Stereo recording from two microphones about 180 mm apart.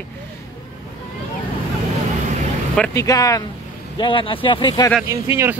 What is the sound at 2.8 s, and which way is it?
Speech, 15° left (ahead or behind).